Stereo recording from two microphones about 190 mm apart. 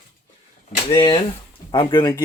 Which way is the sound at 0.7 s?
30° left (ahead or behind).